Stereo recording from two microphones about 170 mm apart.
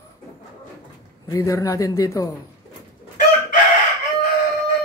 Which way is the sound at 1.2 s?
20° left (ahead or behind).